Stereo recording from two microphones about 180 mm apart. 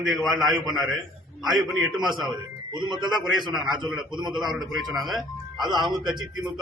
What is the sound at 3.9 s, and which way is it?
Speech, 25° right (ahead or behind).